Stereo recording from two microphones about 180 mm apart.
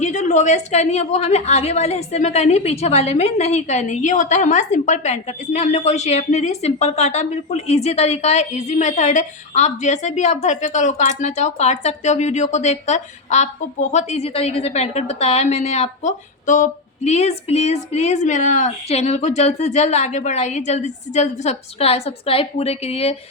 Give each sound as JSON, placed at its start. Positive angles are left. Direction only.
{"t": 0.0, "sound": "a woman's voice", "side_deg": 40}